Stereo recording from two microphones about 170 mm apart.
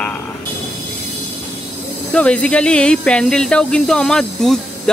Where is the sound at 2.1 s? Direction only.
5° left (ahead or behind).